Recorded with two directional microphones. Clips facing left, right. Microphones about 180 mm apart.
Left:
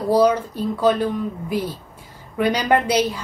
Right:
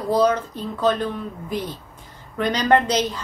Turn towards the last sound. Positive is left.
turn(degrees=10)  # may be behind; listen again after turning